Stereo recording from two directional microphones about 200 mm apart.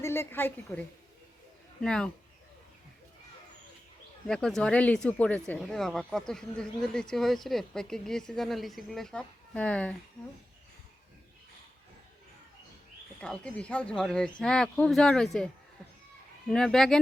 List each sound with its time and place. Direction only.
0.0 s a woman's voice: 10° left (ahead or behind)
4.3 s speech: centre (ahead or behind)
13.2 s speech: 5° left (ahead or behind)
16.5 s speech: centre (ahead or behind)